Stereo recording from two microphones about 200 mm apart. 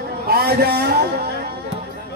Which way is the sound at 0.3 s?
55° right (ahead or behind).